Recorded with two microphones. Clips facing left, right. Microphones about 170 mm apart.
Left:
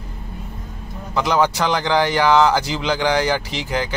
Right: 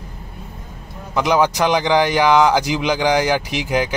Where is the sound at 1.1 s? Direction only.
10° right (ahead or behind).